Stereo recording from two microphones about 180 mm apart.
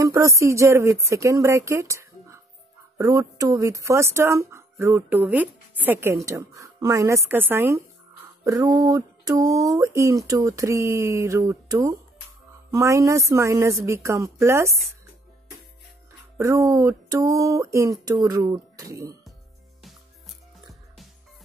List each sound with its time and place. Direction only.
0.0 s speech: 15° right (ahead or behind)
16.3 s speech: 15° right (ahead or behind)
20.6 s music: centre (ahead or behind)